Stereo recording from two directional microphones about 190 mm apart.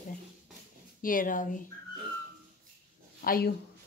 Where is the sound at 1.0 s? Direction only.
45° left (ahead or behind).